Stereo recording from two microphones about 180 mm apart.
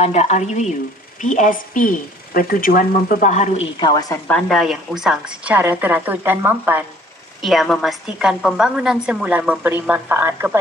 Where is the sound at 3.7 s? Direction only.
25° left (ahead or behind).